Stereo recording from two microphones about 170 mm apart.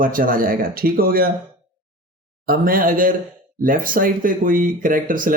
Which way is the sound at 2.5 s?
55° right (ahead or behind).